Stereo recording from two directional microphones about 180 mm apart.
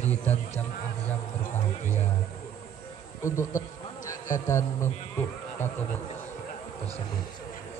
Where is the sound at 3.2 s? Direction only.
15° left (ahead or behind).